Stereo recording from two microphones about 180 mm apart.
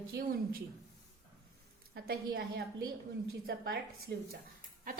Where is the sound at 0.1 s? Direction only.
55° right (ahead or behind).